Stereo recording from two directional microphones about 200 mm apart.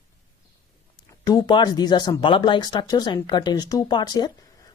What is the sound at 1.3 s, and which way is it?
Speech, 20° left (ahead or behind).